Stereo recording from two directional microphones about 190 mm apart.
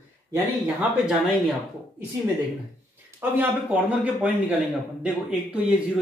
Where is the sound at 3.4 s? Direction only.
5° right (ahead or behind).